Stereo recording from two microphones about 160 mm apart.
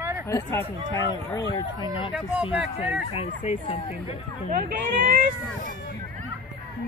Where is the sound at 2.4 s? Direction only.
35° left (ahead or behind).